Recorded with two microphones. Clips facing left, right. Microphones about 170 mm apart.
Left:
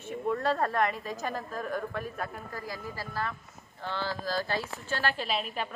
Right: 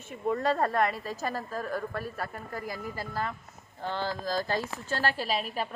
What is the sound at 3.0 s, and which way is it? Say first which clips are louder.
Speech: right 1 dB; 20° right (ahead or behind).